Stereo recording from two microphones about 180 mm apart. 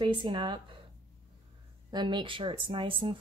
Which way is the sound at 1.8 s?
25° right (ahead or behind).